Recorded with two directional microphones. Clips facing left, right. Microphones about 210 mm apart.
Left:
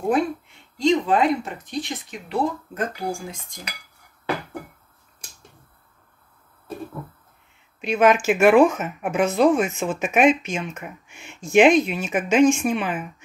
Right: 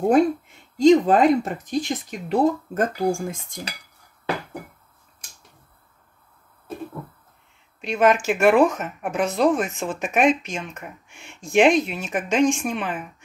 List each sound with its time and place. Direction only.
0.1 s speech: 45° right (ahead or behind)
7.8 s speech: centre (ahead or behind)